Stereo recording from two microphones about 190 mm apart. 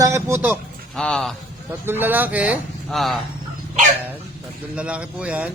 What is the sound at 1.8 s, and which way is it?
Speech, 10° right (ahead or behind).